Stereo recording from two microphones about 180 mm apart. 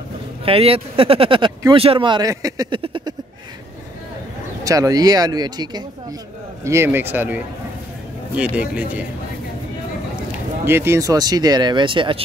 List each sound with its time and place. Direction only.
0.5 s speech: 30° right (ahead or behind)
2.8 s a sound: 30° right (ahead or behind)
4.6 s a man's voice: 20° right (ahead or behind)
10.6 s speech: 15° right (ahead or behind)